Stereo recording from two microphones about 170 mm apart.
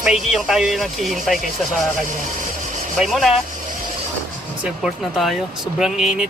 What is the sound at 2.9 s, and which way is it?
Speech, centre (ahead or behind).